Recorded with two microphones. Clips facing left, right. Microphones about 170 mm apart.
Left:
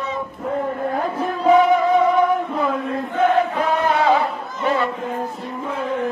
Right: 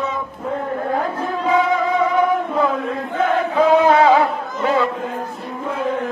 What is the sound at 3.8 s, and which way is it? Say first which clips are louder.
Singing: right 4 dB; 90° right.